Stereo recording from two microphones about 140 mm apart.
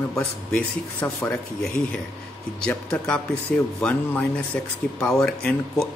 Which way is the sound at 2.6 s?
5° left (ahead or behind).